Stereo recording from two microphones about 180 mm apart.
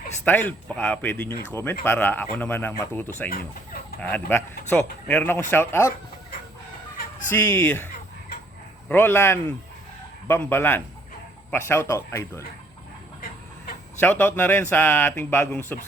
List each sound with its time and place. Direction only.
0.3 s speech: 10° left (ahead or behind)
3.2 s speech: 55° left (ahead or behind)
4.0 s speech: 10° left (ahead or behind)
7.3 s speech: 10° left (ahead or behind)
8.9 s speech: 10° left (ahead or behind)
14.0 s speech: 10° left (ahead or behind)